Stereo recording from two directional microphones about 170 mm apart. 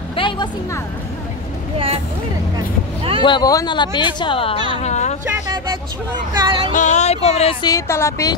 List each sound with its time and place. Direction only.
0.1 s a sound: 30° left (ahead or behind)
3.2 s speech: 25° left (ahead or behind)
4.7 s speech: 40° left (ahead or behind)
6.3 s music: 25° right (ahead or behind)
6.7 s speech: 45° left (ahead or behind)
7.6 s speech: 15° left (ahead or behind)